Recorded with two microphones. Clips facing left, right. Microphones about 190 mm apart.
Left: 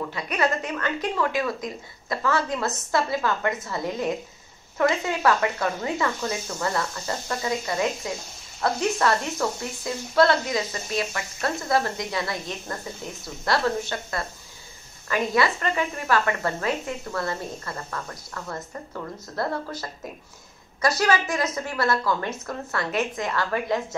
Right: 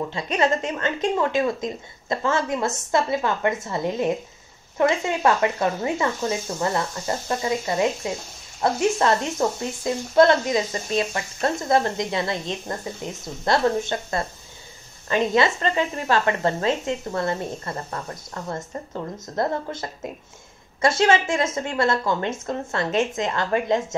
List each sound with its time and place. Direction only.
0.1 s speech: 25° right (ahead or behind)